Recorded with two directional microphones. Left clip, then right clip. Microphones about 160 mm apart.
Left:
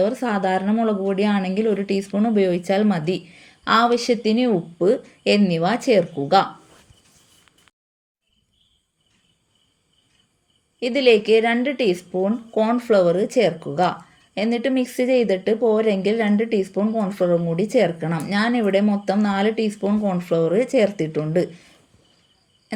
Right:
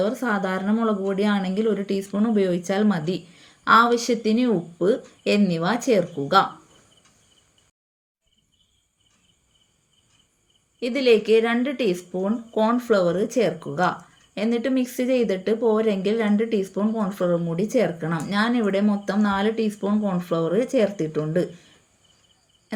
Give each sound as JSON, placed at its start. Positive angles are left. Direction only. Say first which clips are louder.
{"t": 0.0, "sound": "a woman's voice", "louder": "left 3 dB", "side_deg": 15}
{"t": 10.8, "sound": "a woman's voice", "louder": "left 3 dB", "side_deg": 20}